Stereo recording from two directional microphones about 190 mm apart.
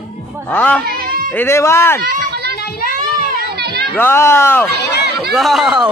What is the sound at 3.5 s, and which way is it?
Children playing, 60° right (ahead or behind).